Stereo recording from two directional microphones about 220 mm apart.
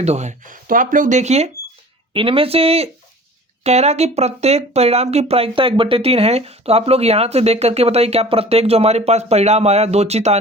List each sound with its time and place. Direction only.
0.0 s speech: 30° right (ahead or behind)